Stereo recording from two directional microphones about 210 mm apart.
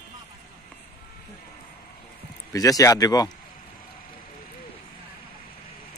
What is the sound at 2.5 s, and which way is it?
Speech, 15° left (ahead or behind).